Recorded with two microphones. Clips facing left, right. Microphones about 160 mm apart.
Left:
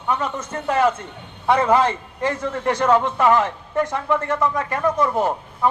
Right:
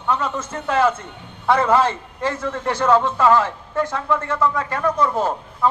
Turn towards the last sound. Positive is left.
turn(degrees=15)  # may be behind; listen again after turning